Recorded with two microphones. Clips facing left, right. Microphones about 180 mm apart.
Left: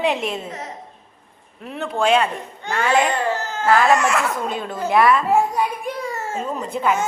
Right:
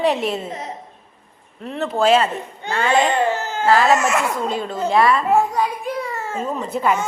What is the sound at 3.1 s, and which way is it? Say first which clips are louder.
Baby cry: right 3 dB; 20° right (ahead or behind).